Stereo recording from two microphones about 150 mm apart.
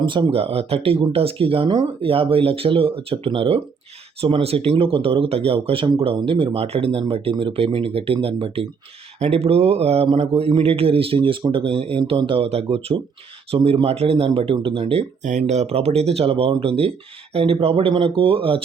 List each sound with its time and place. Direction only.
0.0 s speech: 35° right (ahead or behind)
15.3 s speech: 50° right (ahead or behind)